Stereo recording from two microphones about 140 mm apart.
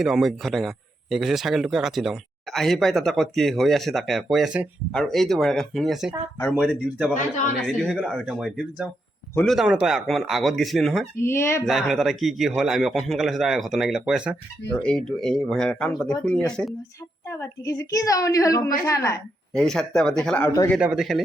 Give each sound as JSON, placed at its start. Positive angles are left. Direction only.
{"t": 0.0, "sound": "speech", "side_deg": 0}
{"t": 11.2, "sound": "a woman's voice", "side_deg": 20}
{"t": 11.6, "sound": "speech", "side_deg": 0}
{"t": 14.8, "sound": "speech", "side_deg": 5}
{"t": 17.2, "sound": "a woman's voice", "side_deg": 20}
{"t": 19.5, "sound": "speech", "side_deg": 5}
{"t": 20.8, "sound": "speech", "side_deg": -5}